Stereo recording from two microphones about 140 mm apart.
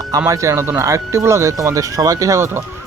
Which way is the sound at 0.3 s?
20° right (ahead or behind).